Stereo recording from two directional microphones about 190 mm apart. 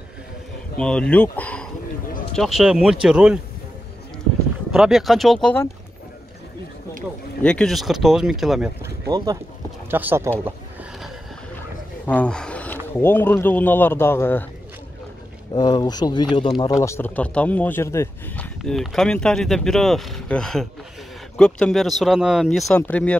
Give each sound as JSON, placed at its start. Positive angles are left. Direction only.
{"t": 0.7, "sound": "speech", "side_deg": 5}
{"t": 4.7, "sound": "speech", "side_deg": 0}
{"t": 7.4, "sound": "speech", "side_deg": 5}
{"t": 12.1, "sound": "speech", "side_deg": 5}
{"t": 15.5, "sound": "speech", "side_deg": 20}